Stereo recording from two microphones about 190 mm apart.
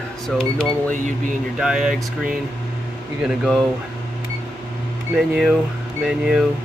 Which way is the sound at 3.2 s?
Centre (ahead or behind).